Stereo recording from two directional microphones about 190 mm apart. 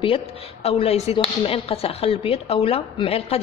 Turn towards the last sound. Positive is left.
turn(degrees=30)  # may be behind; listen again after turning